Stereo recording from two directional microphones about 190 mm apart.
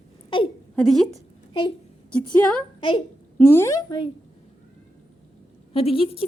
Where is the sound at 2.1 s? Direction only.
5° left (ahead or behind).